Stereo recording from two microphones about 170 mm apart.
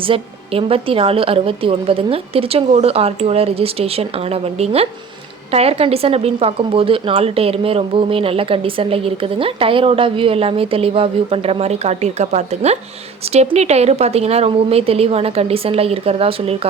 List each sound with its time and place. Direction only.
0.0 s a woman's voice: 30° right (ahead or behind)